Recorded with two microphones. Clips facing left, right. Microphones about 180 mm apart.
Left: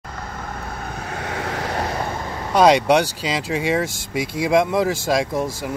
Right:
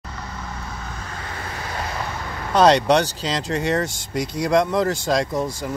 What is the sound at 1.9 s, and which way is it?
Vehicle, 40° left (ahead or behind).